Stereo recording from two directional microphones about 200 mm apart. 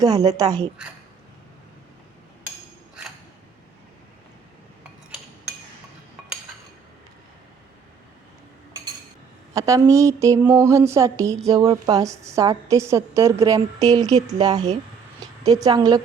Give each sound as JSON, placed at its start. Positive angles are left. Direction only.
{"t": 0.0, "sound": "a woman's voice", "side_deg": -20}
{"t": 9.6, "sound": "a woman's voice", "side_deg": -15}